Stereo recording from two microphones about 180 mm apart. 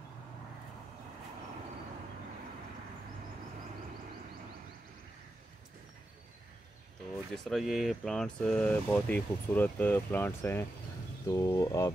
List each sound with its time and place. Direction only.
7.3 s speech: centre (ahead or behind); by 11.9 s 15° left (ahead or behind)